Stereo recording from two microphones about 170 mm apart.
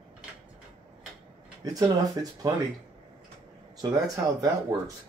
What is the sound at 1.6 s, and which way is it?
Speech, 20° right (ahead or behind).